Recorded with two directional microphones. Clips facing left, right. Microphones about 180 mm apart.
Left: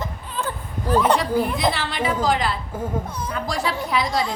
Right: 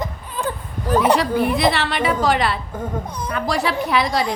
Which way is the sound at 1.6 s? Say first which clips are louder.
Right 4 dB; 70° right (ahead or behind).